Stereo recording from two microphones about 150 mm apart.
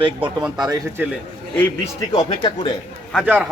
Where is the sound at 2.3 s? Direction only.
30° left (ahead or behind).